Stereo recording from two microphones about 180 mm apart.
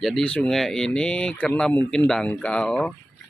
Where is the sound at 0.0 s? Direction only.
5° left (ahead or behind).